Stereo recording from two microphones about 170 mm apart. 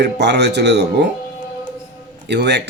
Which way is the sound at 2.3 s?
85° right.